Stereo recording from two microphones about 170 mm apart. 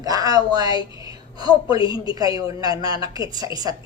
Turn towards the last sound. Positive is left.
turn(degrees=-20)  # may be behind; listen again after turning